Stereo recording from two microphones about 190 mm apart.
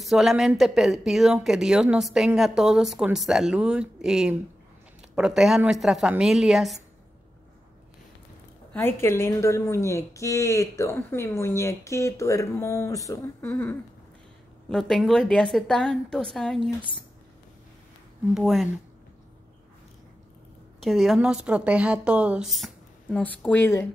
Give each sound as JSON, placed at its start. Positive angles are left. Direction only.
{"t": 0.0, "sound": "speech", "side_deg": 0}
{"t": 8.7, "sound": "a woman's voice", "side_deg": 10}
{"t": 18.3, "sound": "speech", "side_deg": 0}
{"t": 20.8, "sound": "a woman's voice", "side_deg": 0}